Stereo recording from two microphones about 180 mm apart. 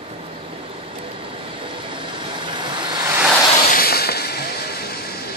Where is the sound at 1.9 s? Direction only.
25° right (ahead or behind).